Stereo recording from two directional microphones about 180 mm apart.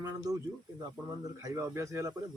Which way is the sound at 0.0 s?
20° right (ahead or behind).